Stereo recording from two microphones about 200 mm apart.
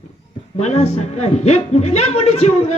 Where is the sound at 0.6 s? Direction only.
35° left (ahead or behind).